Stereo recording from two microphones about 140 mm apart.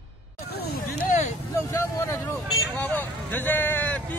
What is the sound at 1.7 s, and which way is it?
Speech, 20° left (ahead or behind).